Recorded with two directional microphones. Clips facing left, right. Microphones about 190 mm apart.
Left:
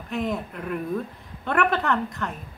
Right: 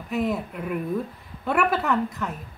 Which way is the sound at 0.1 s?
5° right (ahead or behind).